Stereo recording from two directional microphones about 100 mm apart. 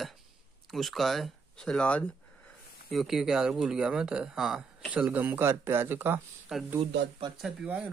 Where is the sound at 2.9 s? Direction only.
Centre (ahead or behind); by 6.2 s 20° right (ahead or behind).